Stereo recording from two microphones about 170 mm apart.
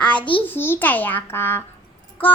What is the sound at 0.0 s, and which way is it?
Babbling, 10° left (ahead or behind).